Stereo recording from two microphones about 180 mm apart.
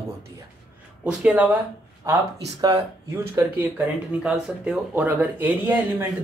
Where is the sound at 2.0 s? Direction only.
20° right (ahead or behind).